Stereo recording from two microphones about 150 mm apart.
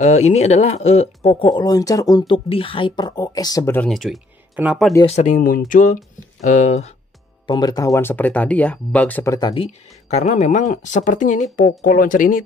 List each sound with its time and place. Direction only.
0.0 s speech: 50° left (ahead or behind)
1.3 s speech: 30° left (ahead or behind)
3.7 s speech: 5° left (ahead or behind)
4.6 s speech: 10° right (ahead or behind)
5.0 s speech: 50° left (ahead or behind)
7.4 s speech: 25° left (ahead or behind)
9.5 s speech: 45° left (ahead or behind); by 12.4 s 65° left (ahead or behind)